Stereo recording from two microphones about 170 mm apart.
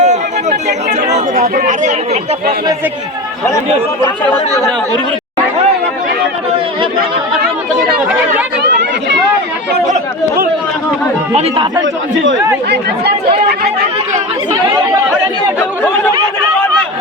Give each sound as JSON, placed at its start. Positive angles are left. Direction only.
{"t": 0.0, "sound": "chatter", "side_deg": -45}
{"t": 1.5, "sound": "speech", "side_deg": -45}
{"t": 8.6, "sound": "chatter", "side_deg": -90}
{"t": 11.3, "sound": "speech", "side_deg": -30}